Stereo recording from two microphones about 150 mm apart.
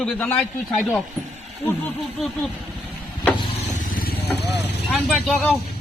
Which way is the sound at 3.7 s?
65° left (ahead or behind).